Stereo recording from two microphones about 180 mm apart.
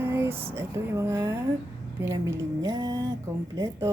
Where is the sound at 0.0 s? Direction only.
15° right (ahead or behind).